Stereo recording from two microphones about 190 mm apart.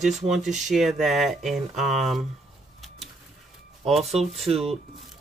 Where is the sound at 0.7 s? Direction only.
Centre (ahead or behind).